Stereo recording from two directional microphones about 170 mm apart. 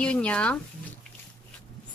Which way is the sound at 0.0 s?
5° left (ahead or behind).